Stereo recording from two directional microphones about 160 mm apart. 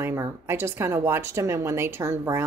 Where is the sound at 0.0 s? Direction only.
15° right (ahead or behind).